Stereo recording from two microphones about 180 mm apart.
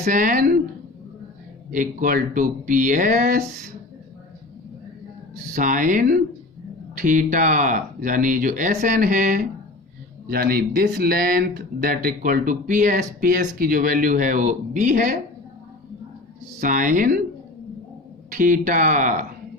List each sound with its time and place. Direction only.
0.0 s speech: 45° right (ahead or behind)
1.7 s speech: 50° right (ahead or behind)
5.5 s speech: 45° right (ahead or behind)
16.6 s speech: 45° right (ahead or behind)
18.3 s speech: 50° right (ahead or behind)